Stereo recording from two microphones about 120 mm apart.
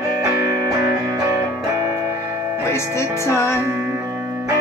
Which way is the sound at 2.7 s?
25° left (ahead or behind).